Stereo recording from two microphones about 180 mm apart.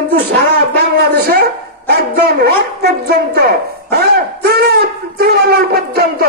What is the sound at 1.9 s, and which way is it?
Dog, 65° right (ahead or behind).